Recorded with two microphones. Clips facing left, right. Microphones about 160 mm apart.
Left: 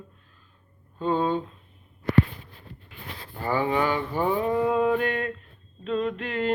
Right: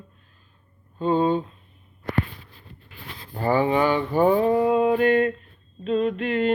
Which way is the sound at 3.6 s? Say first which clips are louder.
Right 4 dB; 25° right (ahead or behind).